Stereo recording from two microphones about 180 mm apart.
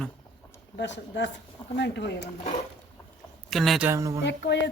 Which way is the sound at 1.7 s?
70° left (ahead or behind).